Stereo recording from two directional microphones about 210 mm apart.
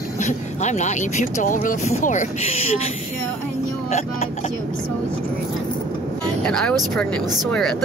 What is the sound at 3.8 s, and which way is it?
Speech, 30° left (ahead or behind).